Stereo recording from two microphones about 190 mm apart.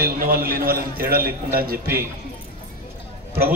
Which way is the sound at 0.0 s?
50° right (ahead or behind).